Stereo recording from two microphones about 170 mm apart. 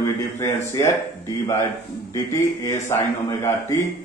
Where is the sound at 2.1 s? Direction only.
20° left (ahead or behind).